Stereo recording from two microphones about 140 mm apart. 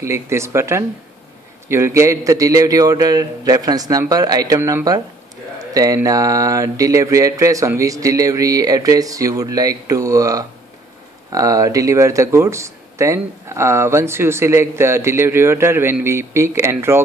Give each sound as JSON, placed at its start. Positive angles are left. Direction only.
{"t": 0.0, "sound": "speech", "side_deg": -20}